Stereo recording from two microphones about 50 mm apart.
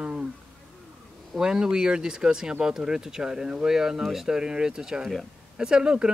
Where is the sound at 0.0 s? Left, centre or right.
Right.